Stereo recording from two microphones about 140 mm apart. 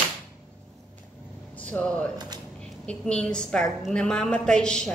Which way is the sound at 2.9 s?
5° left (ahead or behind).